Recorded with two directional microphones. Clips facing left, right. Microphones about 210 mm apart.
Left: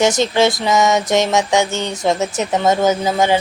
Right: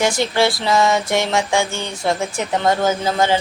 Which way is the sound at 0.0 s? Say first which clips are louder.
Left 3 dB; 20° left (ahead or behind).